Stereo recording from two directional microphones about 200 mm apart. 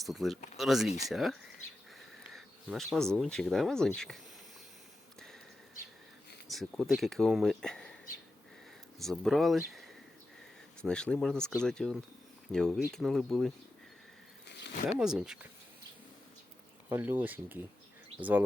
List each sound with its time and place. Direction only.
0.0 s speech: centre (ahead or behind)
6.5 s speech: centre (ahead or behind)
9.0 s speech: centre (ahead or behind)
14.4 s a sound: 55° left (ahead or behind)
14.9 s speech: 5° right (ahead or behind)
16.9 s speech: 10° right (ahead or behind)